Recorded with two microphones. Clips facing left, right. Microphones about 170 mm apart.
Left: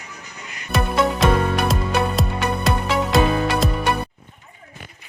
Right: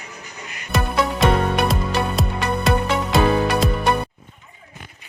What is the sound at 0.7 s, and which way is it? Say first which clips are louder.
Music: left 1 dB; centre (ahead or behind).